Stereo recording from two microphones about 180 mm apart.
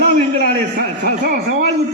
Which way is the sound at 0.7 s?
45° right (ahead or behind).